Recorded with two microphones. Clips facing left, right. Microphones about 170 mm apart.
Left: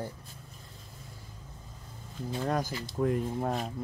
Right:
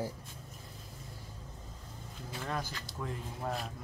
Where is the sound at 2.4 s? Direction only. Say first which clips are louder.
Left 7 dB; 45° left (ahead or behind).